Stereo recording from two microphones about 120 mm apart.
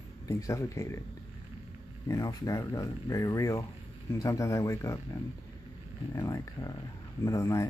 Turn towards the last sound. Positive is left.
turn(degrees=25)  # may be behind; listen again after turning